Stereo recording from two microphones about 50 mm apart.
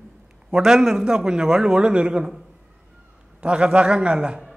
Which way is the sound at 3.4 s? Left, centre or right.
Right.